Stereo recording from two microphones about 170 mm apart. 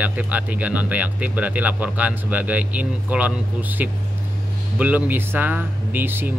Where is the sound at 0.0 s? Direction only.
10° right (ahead or behind).